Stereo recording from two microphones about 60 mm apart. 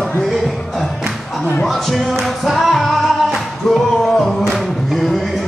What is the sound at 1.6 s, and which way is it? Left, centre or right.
Music, centre.